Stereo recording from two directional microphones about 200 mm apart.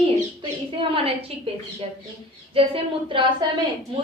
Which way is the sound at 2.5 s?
25° right (ahead or behind).